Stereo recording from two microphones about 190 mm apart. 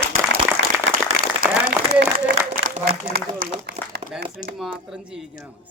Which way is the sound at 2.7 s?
45° right (ahead or behind).